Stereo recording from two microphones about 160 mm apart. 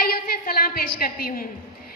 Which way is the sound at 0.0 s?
70° left (ahead or behind).